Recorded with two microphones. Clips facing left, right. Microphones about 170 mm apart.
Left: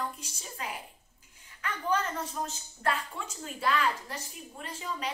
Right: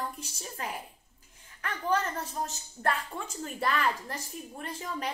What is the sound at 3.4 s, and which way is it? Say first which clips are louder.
Speech: left 1 dB; 50° right (ahead or behind).